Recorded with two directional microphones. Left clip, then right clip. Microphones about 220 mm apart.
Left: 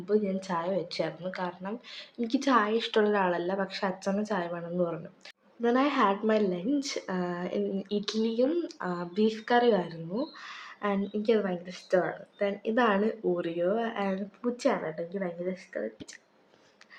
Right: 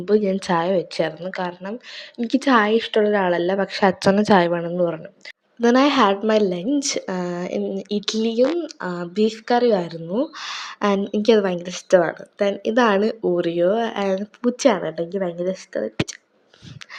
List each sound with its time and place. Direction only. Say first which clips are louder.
0.0 s speech: right 9 dB; 40° right (ahead or behind)